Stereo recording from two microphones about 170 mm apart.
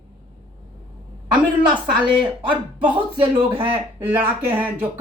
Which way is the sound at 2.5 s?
30° right (ahead or behind).